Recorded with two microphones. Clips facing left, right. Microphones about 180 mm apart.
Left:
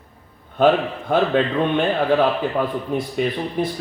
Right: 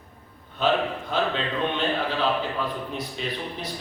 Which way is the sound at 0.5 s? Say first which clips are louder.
Left 7 dB; 50° left (ahead or behind).